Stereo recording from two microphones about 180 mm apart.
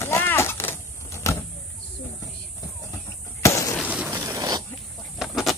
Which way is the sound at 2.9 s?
15° left (ahead or behind).